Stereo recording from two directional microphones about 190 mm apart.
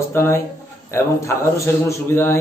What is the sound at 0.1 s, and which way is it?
A man's voice, 15° left (ahead or behind).